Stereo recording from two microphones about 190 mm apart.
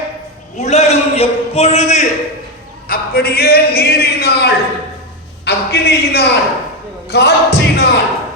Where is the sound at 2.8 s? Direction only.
50° left (ahead or behind).